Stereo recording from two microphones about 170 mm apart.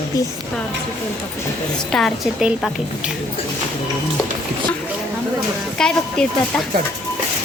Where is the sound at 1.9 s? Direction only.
Centre (ahead or behind).